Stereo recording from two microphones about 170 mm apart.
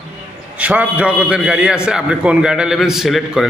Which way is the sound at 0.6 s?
10° right (ahead or behind).